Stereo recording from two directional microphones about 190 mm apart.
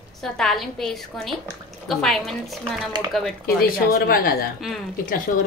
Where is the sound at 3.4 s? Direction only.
50° left (ahead or behind).